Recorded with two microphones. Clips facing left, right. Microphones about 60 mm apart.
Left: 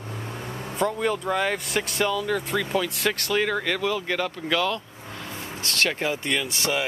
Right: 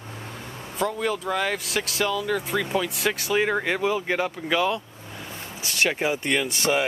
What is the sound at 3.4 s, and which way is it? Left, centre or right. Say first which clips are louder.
Speech: right 1 dB; centre.